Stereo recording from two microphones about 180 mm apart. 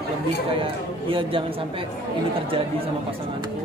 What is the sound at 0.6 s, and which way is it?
Speech, 30° right (ahead or behind).